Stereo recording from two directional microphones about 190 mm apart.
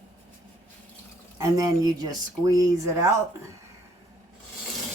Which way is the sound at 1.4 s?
20° right (ahead or behind).